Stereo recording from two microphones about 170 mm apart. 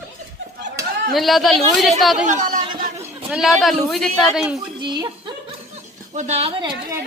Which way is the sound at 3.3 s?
Centre (ahead or behind).